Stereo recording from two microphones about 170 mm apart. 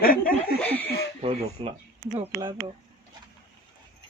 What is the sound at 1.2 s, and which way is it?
Speech, 35° right (ahead or behind).